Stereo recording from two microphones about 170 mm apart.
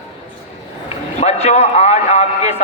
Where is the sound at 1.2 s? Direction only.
40° left (ahead or behind).